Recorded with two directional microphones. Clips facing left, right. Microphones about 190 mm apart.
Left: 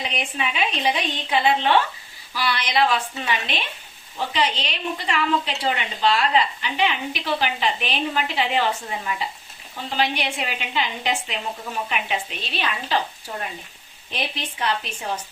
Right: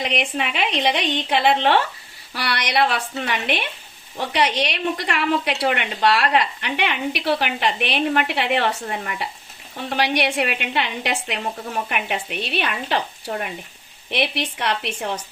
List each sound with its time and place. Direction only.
0.0 s a woman's voice: 75° right (ahead or behind)
11.9 s a woman's voice: 60° right (ahead or behind)
14.1 s a woman's voice: 75° right (ahead or behind)